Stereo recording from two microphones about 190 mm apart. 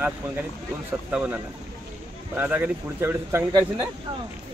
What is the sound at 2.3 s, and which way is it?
A man's voice, 10° right (ahead or behind).